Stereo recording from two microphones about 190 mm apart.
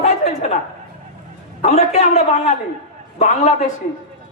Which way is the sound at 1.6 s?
35° left (ahead or behind).